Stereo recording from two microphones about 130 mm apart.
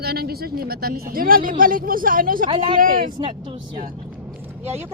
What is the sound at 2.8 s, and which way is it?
Speech, 90° right.